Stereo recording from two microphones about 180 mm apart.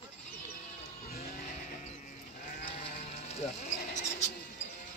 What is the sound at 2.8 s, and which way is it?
Music, 35° left (ahead or behind).